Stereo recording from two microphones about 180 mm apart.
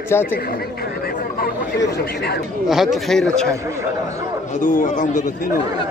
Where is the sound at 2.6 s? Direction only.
Centre (ahead or behind).